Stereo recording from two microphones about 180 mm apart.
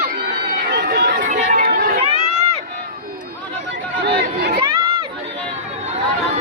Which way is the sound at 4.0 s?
65° right (ahead or behind).